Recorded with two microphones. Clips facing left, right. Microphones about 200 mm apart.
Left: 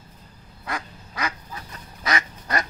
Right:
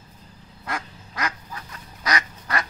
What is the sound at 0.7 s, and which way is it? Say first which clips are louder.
Quack: even; 5° left (ahead or behind).